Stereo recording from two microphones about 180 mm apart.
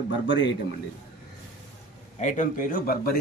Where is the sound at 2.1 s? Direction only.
45° left (ahead or behind).